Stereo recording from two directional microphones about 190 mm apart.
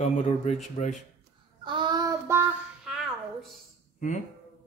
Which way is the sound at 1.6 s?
25° right (ahead or behind).